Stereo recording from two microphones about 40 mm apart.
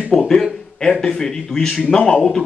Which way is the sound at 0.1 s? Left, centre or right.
Centre.